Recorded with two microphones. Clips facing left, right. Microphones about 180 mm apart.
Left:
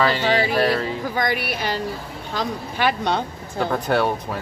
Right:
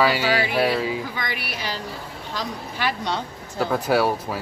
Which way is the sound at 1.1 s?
50° left (ahead or behind).